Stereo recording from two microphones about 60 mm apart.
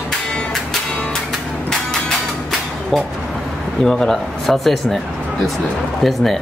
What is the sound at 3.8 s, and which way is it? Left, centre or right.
Speech, centre.